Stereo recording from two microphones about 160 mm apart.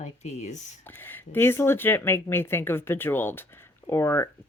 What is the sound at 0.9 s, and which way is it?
Speech, 10° left (ahead or behind).